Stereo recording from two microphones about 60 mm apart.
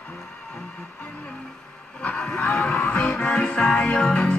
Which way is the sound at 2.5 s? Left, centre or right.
Centre.